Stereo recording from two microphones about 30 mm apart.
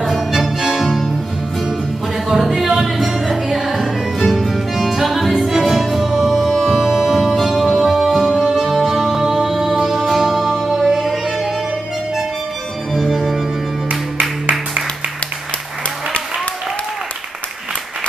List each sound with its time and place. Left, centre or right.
0.0 s music: centre
0.6 s music: centre
2.2 s music: centre
3.7 s music: centre
4.7 s music: centre
7.4 s music: centre
8.8 s music: centre
10.7 s music: centre